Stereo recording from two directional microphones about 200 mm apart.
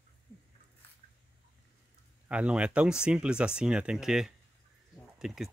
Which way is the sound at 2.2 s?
5° right (ahead or behind).